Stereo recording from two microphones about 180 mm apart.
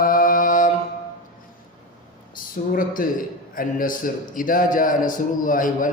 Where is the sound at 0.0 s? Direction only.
50° left (ahead or behind).